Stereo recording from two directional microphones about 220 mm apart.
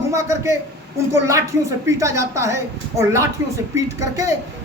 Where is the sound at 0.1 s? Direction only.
15° right (ahead or behind).